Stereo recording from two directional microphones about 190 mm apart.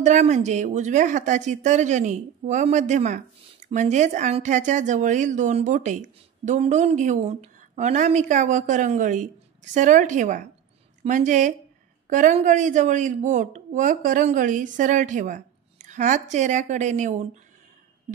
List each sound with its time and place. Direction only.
0.0 s speech: 40° right (ahead or behind)